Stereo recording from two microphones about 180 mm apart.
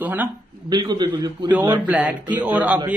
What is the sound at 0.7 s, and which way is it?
Speech, 25° right (ahead or behind).